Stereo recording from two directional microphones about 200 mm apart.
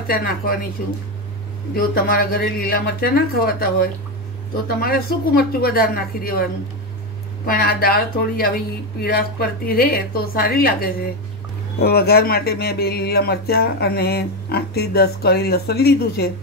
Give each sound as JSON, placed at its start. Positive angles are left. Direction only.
{"t": 0.0, "sound": "speech", "side_deg": 50}